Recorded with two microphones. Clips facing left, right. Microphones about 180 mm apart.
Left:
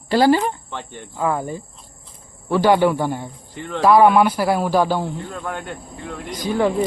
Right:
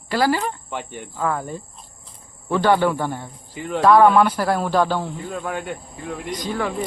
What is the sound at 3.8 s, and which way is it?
Speech, 10° left (ahead or behind).